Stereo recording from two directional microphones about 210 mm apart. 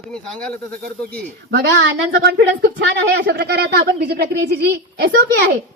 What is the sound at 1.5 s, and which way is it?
Speech, 60° right (ahead or behind).